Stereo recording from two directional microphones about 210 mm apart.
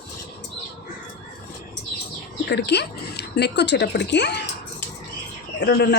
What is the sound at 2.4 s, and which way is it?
Speech, 50° left (ahead or behind).